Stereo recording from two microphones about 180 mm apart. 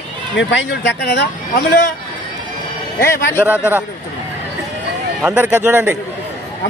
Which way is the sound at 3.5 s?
10° right (ahead or behind).